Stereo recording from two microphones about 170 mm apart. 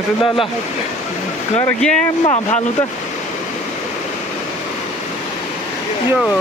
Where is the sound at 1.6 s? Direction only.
5° left (ahead or behind).